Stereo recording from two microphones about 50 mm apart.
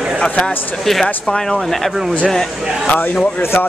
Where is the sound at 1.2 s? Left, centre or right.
Centre.